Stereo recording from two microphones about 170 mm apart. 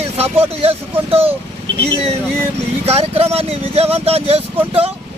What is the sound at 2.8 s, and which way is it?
Speech, 35° right (ahead or behind).